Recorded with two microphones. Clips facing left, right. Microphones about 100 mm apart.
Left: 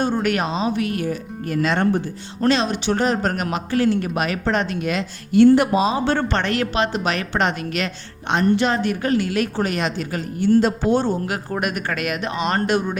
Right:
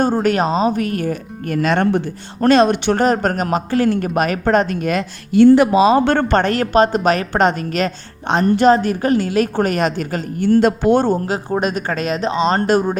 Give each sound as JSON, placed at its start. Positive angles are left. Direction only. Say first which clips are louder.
{"t": 0.0, "sound": "speech", "louder": "right 5 dB", "side_deg": -40}
{"t": 5.7, "sound": "speech", "louder": "right 6 dB", "side_deg": -70}
{"t": 11.3, "sound": "speech", "louder": "right 5 dB", "side_deg": -25}